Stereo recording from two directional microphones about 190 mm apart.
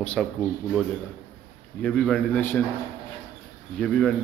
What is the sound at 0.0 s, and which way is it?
A man's voice, 5° left (ahead or behind).